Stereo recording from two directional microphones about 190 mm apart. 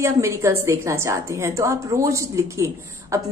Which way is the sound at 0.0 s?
15° right (ahead or behind).